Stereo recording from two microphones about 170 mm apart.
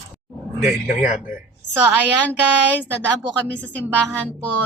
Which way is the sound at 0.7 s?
45° left (ahead or behind).